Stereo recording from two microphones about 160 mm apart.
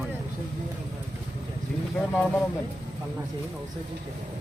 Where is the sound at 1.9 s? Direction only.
5° left (ahead or behind).